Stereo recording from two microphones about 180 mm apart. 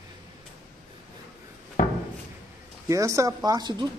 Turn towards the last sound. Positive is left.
turn(degrees=-25)  # may be behind; listen again after turning